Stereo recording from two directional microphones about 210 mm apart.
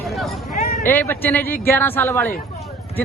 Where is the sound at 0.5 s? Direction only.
45° left (ahead or behind).